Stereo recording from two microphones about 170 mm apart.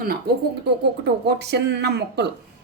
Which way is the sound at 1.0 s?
75° right (ahead or behind).